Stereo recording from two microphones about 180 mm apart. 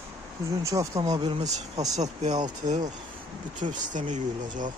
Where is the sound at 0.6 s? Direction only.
20° right (ahead or behind).